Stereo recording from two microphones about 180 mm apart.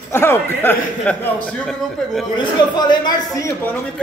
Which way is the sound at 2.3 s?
25° left (ahead or behind).